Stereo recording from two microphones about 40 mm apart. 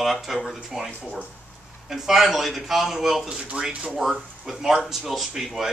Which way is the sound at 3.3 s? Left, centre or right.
Right.